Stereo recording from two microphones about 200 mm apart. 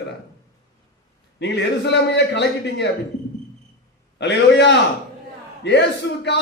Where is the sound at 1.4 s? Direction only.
60° left (ahead or behind).